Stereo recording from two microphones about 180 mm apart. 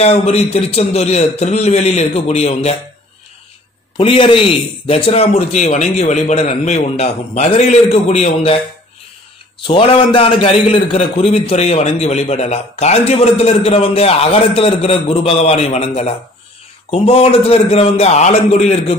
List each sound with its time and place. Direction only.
0.0 s a man's voice: 35° left (ahead or behind)
3.9 s a man's voice: 30° left (ahead or behind)
9.7 s a man's voice: 30° left (ahead or behind)